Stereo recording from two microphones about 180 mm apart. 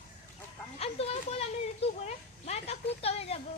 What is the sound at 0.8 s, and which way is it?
Speech, 35° left (ahead or behind).